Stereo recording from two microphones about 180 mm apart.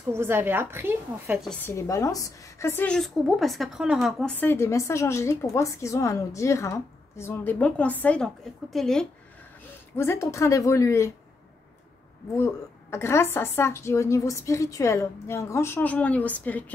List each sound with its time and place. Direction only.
0.1 s a woman's voice: 10° right (ahead or behind)
1.4 s a woman's voice: 5° left (ahead or behind)
9.9 s a woman's voice: 15° left (ahead or behind)
12.4 s a woman's voice: 15° left (ahead or behind)